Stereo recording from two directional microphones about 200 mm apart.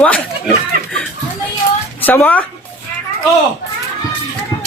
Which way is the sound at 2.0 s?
10° left (ahead or behind).